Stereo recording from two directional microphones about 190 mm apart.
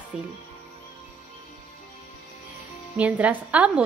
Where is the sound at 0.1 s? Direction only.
5° right (ahead or behind).